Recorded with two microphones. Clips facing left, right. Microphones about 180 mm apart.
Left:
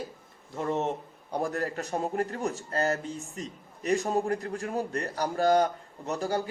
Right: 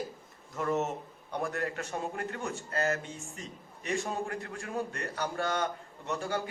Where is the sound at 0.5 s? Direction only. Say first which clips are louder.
Left 2 dB; 30° left (ahead or behind).